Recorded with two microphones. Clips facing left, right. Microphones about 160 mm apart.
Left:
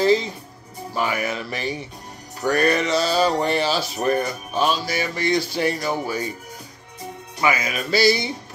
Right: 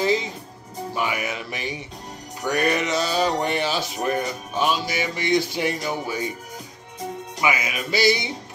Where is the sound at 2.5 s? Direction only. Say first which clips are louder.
Left 3 dB; 15° right (ahead or behind).